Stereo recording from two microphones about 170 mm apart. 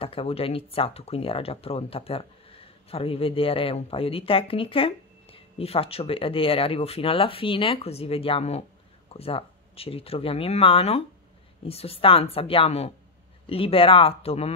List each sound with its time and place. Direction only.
0.0 s speech: 35° left (ahead or behind)